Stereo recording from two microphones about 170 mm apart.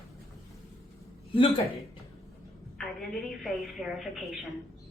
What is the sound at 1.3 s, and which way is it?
Speech, 30° left (ahead or behind).